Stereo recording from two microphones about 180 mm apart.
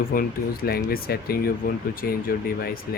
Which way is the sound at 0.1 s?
55° left (ahead or behind).